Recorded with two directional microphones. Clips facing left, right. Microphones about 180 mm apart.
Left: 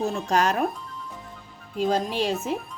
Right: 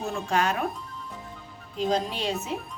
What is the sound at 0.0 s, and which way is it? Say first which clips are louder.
Speech: left 3 dB; 40° left (ahead or behind).